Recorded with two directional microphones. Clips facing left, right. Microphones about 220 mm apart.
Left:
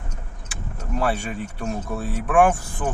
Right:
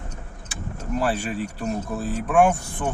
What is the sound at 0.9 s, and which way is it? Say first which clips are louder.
Speech: even; 5° right (ahead or behind).